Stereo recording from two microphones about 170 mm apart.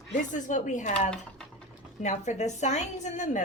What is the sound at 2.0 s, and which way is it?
Speech, 45° left (ahead or behind).